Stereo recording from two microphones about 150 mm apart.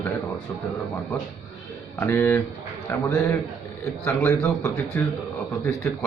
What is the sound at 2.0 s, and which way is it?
A man's voice, 15° left (ahead or behind).